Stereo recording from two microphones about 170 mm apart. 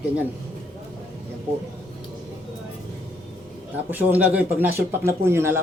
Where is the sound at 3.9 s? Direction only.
10° right (ahead or behind).